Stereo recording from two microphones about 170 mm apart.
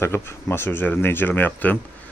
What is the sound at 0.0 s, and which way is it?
Speech, 15° left (ahead or behind).